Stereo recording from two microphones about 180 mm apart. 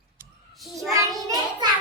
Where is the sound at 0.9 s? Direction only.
20° right (ahead or behind).